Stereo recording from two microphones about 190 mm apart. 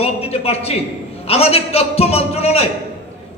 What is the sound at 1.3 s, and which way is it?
A man's voice, 30° left (ahead or behind).